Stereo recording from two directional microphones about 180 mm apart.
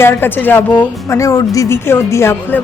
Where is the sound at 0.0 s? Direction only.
10° left (ahead or behind).